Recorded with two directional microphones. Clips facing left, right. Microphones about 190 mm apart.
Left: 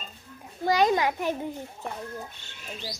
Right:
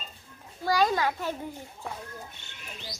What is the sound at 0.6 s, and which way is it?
Children playing, 20° left (ahead or behind).